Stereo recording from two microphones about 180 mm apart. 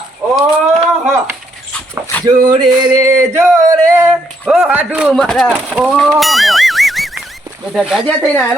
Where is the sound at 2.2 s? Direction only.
20° right (ahead or behind).